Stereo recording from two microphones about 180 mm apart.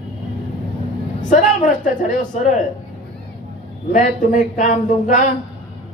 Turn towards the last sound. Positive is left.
turn(degrees=45)  # may be behind; listen again after turning